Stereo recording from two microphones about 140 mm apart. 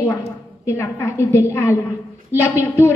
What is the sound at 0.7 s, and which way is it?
A woman's voice, 20° left (ahead or behind).